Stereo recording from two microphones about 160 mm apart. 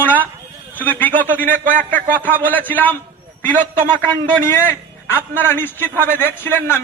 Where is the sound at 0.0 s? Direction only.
10° left (ahead or behind).